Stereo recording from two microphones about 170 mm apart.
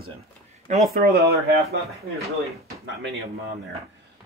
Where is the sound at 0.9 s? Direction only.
65° right (ahead or behind).